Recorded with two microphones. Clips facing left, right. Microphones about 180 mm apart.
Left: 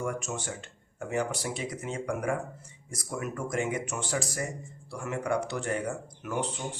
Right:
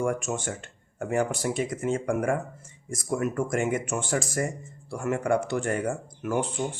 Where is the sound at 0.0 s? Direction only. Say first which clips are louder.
Right 6 dB; 50° right (ahead or behind).